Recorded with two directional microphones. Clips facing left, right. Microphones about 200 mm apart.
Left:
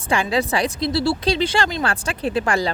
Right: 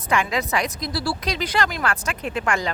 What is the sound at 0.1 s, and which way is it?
A woman's voice, 30° left (ahead or behind).